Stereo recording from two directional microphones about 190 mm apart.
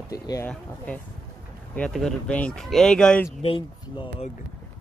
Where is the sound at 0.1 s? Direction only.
20° left (ahead or behind).